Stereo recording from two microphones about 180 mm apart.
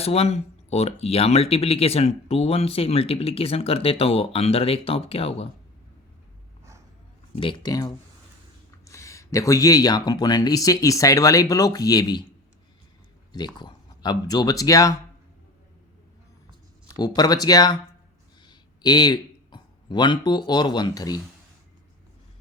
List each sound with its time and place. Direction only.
0.0 s speech: 35° left (ahead or behind)
7.3 s speech: 25° left (ahead or behind)
13.3 s speech: 25° left (ahead or behind)
17.0 s speech: 20° left (ahead or behind)